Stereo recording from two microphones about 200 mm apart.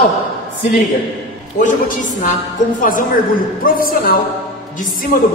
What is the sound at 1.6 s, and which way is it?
Speech, 40° left (ahead or behind).